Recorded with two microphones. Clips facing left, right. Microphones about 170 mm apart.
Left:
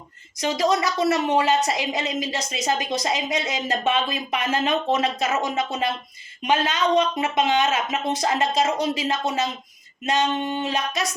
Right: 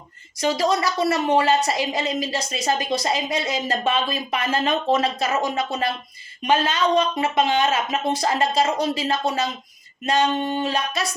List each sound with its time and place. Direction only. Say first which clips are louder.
0.3 s a woman's voice: right 1 dB; 15° left (ahead or behind)
10.3 s a sound: right 2 dB; 30° right (ahead or behind)
10.6 s a woman's voice: right 1 dB; 20° left (ahead or behind)